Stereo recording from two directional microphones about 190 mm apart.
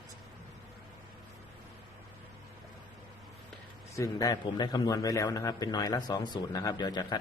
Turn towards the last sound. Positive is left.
turn(degrees=20)  # may be behind; listen again after turning